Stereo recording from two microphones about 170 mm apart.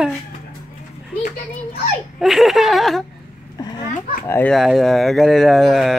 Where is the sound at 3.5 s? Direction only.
25° left (ahead or behind).